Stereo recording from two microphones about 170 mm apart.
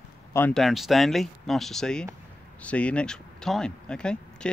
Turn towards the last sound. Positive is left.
turn(degrees=5)  # may be behind; listen again after turning